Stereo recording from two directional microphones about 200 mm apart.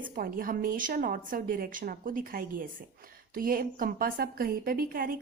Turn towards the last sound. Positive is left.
turn(degrees=-45)  # may be behind; listen again after turning